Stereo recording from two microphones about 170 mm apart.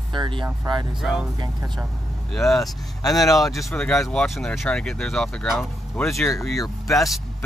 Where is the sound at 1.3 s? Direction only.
25° right (ahead or behind).